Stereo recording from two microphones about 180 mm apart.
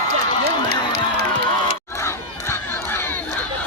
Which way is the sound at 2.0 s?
15° left (ahead or behind).